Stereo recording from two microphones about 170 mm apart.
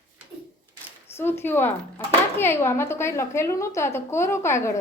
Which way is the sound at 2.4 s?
15° left (ahead or behind).